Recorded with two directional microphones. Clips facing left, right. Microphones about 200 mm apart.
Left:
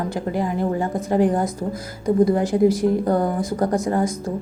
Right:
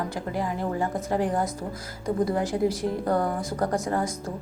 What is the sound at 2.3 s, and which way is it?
A woman's voice, 15° left (ahead or behind).